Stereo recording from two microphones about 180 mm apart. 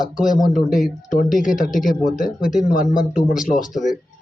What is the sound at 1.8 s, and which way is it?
Speech, 50° left (ahead or behind).